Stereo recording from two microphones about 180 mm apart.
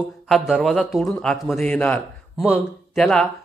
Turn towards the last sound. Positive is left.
turn(degrees=5)  # may be behind; listen again after turning